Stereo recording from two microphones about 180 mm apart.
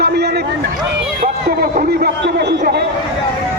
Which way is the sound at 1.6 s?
50° right (ahead or behind).